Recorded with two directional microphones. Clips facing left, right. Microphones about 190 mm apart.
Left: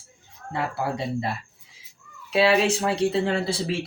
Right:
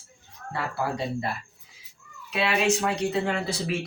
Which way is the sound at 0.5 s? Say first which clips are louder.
Left 2 dB; 20° left (ahead or behind).